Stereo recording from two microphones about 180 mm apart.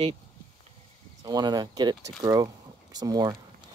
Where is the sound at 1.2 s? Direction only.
20° right (ahead or behind).